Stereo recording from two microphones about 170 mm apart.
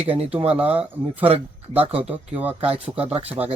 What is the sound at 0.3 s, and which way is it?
Speech, 35° right (ahead or behind).